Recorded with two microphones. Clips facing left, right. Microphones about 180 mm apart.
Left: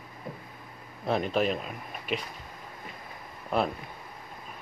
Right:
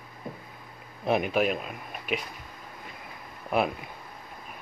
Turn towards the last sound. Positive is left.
turn(degrees=-10)  # may be behind; listen again after turning